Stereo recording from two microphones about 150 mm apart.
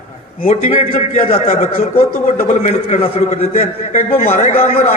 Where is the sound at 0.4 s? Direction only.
45° left (ahead or behind).